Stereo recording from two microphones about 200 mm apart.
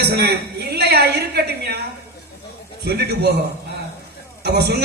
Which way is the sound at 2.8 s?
55° right (ahead or behind).